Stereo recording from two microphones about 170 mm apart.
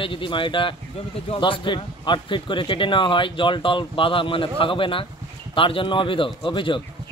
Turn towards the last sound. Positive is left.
turn(degrees=30)  # may be behind; listen again after turning